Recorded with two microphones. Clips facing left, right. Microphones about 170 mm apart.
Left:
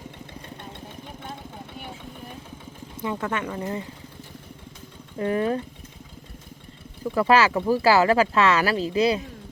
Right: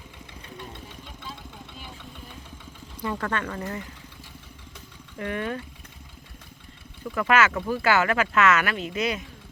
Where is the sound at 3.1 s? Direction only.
15° left (ahead or behind).